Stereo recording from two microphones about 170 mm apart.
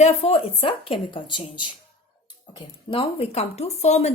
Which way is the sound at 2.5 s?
30° left (ahead or behind).